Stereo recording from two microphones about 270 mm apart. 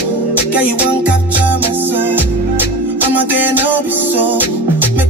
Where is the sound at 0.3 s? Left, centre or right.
Centre.